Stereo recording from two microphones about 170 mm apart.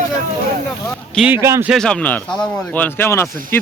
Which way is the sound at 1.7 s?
5° left (ahead or behind).